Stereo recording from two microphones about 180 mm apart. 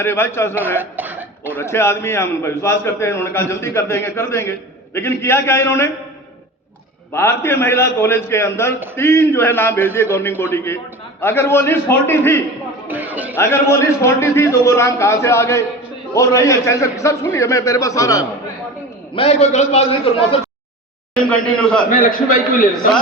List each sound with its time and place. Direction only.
0.0 s a man's voice: 15° left (ahead or behind)
0.8 s a sound: 10° right (ahead or behind)
1.5 s a man's voice: 15° left (ahead or behind)
7.1 s a man's voice: 15° left (ahead or behind)
12.9 s music: 10° right (ahead or behind)
13.3 s a man's voice: 15° left (ahead or behind)
19.1 s a man's voice: 35° left (ahead or behind)
21.2 s a man's voice: 5° left (ahead or behind)
21.8 s a man's voice: 50° left (ahead or behind)